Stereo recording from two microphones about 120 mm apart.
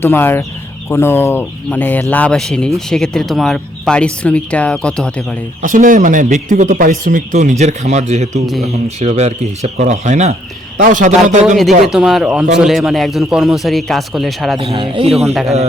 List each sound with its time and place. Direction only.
0.0 s speech: 20° left (ahead or behind)
5.6 s speech: 90° right
7.6 s speech: 75° right (ahead or behind); by 11.5 s 90° right
11.9 s speech: 5° right (ahead or behind)
14.6 s speech: 50° right (ahead or behind)